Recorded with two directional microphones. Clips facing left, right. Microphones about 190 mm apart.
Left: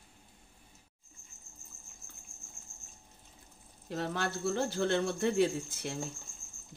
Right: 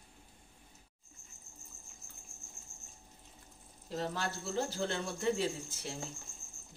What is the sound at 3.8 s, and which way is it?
Speech, 60° left (ahead or behind).